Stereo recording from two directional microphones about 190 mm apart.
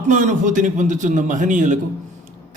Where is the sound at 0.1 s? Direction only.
40° right (ahead or behind).